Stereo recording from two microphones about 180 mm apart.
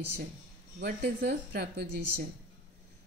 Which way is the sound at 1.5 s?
65° right (ahead or behind).